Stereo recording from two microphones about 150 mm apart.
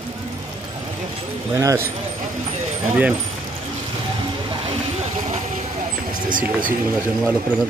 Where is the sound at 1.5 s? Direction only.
20° right (ahead or behind).